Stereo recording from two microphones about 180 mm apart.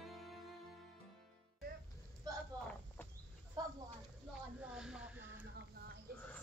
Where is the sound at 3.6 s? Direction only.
20° right (ahead or behind).